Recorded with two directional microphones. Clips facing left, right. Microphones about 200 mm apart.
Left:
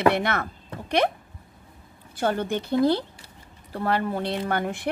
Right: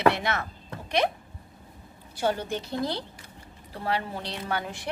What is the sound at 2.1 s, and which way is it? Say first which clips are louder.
Speech: left 3 dB; 55° left (ahead or behind).